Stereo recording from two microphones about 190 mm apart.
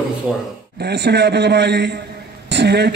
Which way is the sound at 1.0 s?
60° right (ahead or behind).